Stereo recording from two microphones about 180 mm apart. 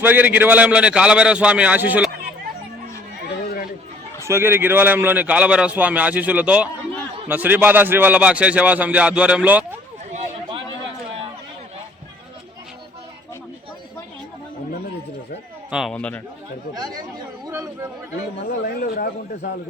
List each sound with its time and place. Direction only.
0.0 s speech: 10° right (ahead or behind)
4.3 s speech: 15° right (ahead or behind)
10.5 s a sound: 30° right (ahead or behind)
15.7 s speech: centre (ahead or behind)
16.7 s speech: 20° right (ahead or behind)
17.4 s chatter: 15° right (ahead or behind)
18.6 s a man's voice: 55° left (ahead or behind)